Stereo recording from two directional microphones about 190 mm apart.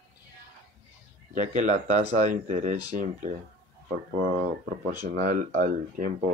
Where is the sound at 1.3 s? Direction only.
40° right (ahead or behind).